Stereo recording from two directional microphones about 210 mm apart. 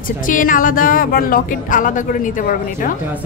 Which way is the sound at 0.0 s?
40° left (ahead or behind).